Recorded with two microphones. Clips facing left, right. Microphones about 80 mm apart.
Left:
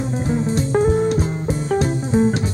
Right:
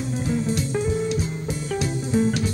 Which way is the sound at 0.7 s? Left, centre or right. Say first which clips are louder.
Left 10 dB; left.